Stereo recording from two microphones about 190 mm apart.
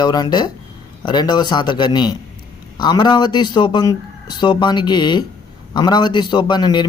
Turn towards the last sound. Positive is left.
turn(degrees=20)  # may be behind; listen again after turning